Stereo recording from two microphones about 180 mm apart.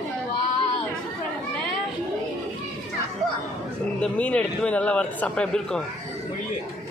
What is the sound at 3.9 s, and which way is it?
A man's voice, 5° left (ahead or behind).